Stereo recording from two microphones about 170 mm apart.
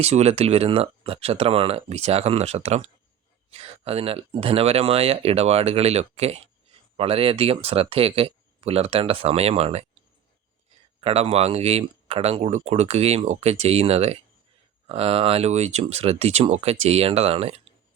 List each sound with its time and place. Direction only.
0.0 s speech: 40° right (ahead or behind)
11.0 s speech: 35° right (ahead or behind)